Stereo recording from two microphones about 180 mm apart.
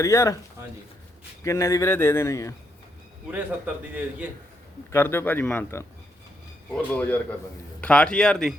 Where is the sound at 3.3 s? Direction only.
10° right (ahead or behind).